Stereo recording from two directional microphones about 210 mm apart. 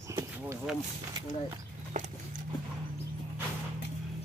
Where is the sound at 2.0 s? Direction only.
35° right (ahead or behind).